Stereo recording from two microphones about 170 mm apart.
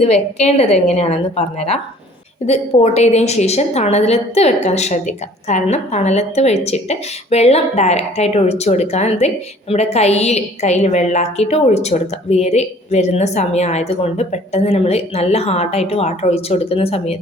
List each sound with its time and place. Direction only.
0.0 s a woman's voice: 40° left (ahead or behind)